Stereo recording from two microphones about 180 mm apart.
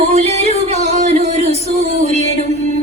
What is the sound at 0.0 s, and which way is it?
Music, 35° right (ahead or behind).